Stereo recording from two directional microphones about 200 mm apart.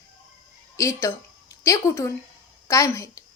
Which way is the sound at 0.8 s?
15° left (ahead or behind).